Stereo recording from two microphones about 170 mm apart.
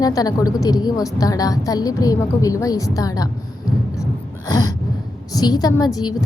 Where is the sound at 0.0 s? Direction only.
20° left (ahead or behind).